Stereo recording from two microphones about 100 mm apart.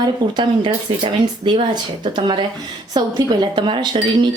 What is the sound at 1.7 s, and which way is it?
Speech, 45° right (ahead or behind).